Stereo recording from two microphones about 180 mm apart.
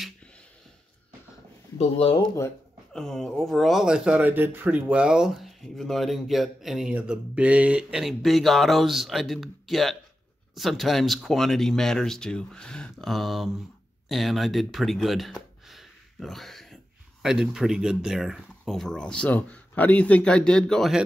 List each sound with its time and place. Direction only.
1.8 s speech: 30° left (ahead or behind)
2.9 s speech: centre (ahead or behind)